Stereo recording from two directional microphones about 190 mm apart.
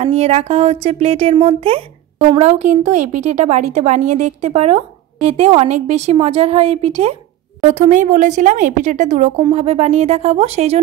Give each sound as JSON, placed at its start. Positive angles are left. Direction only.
{"t": 0.0, "sound": "speech", "side_deg": -30}